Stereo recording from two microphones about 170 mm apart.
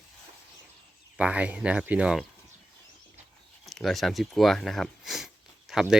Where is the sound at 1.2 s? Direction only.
5° right (ahead or behind).